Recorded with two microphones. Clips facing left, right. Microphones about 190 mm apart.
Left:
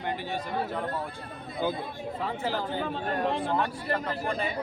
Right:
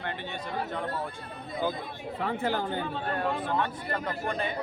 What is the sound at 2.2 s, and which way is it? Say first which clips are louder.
Speech: right 2 dB; 60° right (ahead or behind).